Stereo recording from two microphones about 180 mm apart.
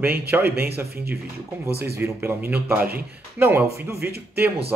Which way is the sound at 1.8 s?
15° right (ahead or behind).